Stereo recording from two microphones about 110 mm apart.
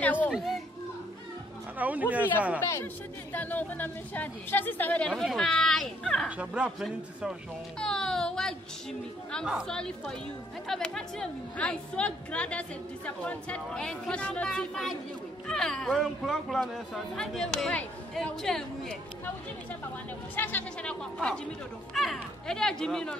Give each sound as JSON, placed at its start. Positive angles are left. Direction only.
{"t": 0.0, "sound": "children playing", "side_deg": 15}
{"t": 0.3, "sound": "a child's voice", "side_deg": 0}
{"t": 1.8, "sound": "speech", "side_deg": -15}
{"t": 2.6, "sound": "a woman's voice", "side_deg": 25}
{"t": 5.1, "sound": "speech", "side_deg": 0}
{"t": 6.2, "sound": "speech", "side_deg": -10}
{"t": 7.8, "sound": "music", "side_deg": 5}
{"t": 9.7, "sound": "a woman's voice", "side_deg": 5}
{"t": 20.3, "sound": "a woman's voice", "side_deg": 15}